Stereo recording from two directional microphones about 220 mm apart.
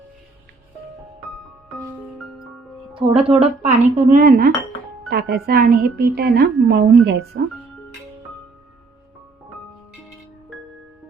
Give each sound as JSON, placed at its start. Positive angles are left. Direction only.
{"t": 2.9, "sound": "a woman's voice", "side_deg": -25}